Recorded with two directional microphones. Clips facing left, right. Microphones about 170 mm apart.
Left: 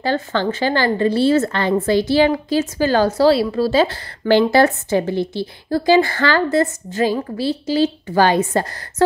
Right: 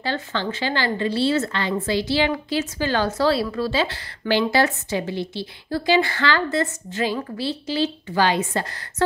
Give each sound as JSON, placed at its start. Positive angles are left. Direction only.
{"t": 0.0, "sound": "a woman's voice", "side_deg": 45}